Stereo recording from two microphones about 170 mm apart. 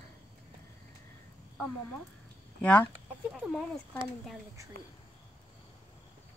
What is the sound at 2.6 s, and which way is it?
Speech, 10° left (ahead or behind).